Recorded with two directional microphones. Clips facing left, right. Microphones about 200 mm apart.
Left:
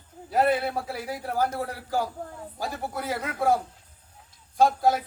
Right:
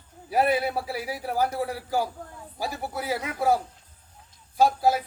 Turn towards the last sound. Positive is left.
turn(degrees=-5)  # may be behind; listen again after turning